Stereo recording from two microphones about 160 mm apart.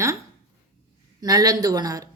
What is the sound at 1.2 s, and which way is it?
Speech, 25° right (ahead or behind).